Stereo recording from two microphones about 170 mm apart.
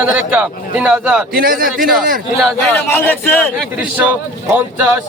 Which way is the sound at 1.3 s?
60° right (ahead or behind).